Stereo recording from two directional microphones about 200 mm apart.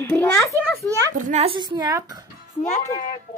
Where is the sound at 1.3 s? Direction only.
30° right (ahead or behind).